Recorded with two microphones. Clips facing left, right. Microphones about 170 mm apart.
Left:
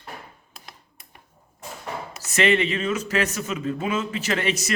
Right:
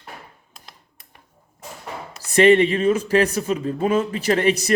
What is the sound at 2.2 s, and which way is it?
Speech, 35° right (ahead or behind).